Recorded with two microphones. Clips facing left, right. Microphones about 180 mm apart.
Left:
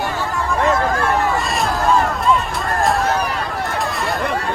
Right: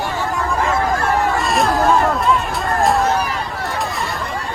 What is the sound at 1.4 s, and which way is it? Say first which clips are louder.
Vehicle: right 3 dB; centre (ahead or behind).